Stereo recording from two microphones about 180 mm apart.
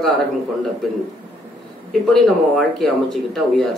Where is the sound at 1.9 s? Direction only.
Centre (ahead or behind).